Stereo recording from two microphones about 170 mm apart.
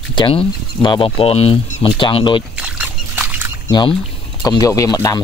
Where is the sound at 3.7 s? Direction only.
25° left (ahead or behind).